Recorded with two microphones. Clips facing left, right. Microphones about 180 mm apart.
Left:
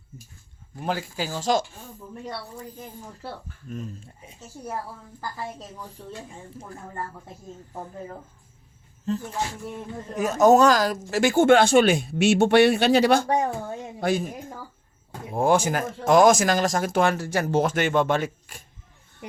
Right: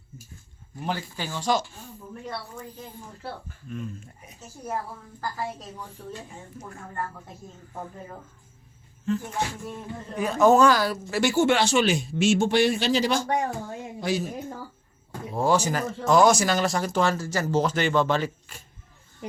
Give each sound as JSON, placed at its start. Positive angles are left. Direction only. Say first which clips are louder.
{"t": 1.2, "sound": "speech", "louder": "left 2 dB", "side_deg": 45}
{"t": 3.7, "sound": "speech", "louder": "even", "side_deg": 35}
{"t": 9.1, "sound": "speech", "louder": "even", "side_deg": 35}
{"t": 13.2, "sound": "a woman's voice", "louder": "left 3 dB", "side_deg": 25}
{"t": 14.0, "sound": "speech", "louder": "left 3 dB", "side_deg": 55}
{"t": 15.4, "sound": "speech", "louder": "left 2 dB", "side_deg": 50}